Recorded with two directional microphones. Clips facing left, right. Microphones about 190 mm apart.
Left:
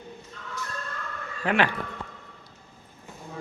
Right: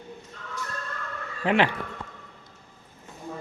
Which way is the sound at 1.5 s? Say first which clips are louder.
Right 2 dB; 25° right (ahead or behind).